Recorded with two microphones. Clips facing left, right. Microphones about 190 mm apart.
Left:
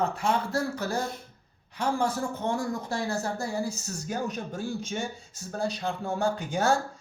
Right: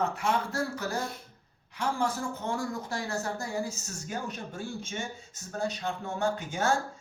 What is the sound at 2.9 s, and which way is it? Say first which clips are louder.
Speech: left 3 dB; 30° left (ahead or behind).